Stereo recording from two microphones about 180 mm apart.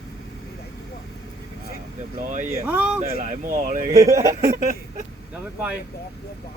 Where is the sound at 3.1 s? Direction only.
40° right (ahead or behind).